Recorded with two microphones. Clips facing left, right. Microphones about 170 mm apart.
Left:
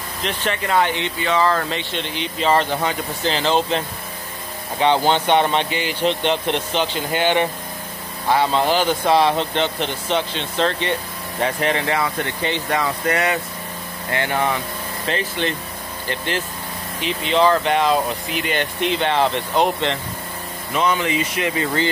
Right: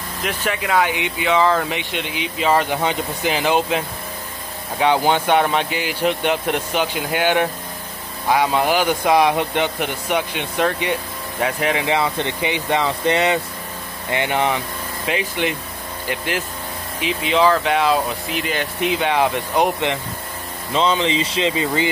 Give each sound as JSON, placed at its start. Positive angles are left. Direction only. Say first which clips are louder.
{"t": 0.2, "sound": "speech", "louder": "even", "side_deg": -5}